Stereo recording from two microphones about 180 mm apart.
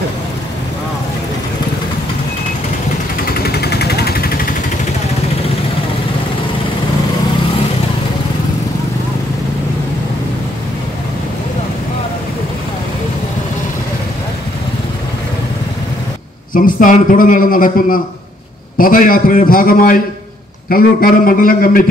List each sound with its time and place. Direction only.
3.4 s vehicle: 60° left (ahead or behind)
16.5 s a man's voice: 50° left (ahead or behind)